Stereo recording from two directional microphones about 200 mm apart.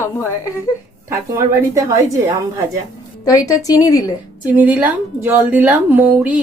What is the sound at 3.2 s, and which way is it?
Speech, 15° left (ahead or behind).